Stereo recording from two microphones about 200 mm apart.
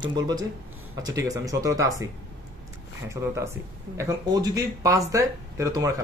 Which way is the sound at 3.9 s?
20° right (ahead or behind).